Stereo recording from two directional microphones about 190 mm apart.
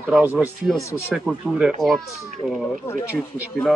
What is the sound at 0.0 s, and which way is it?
Speech, 10° right (ahead or behind).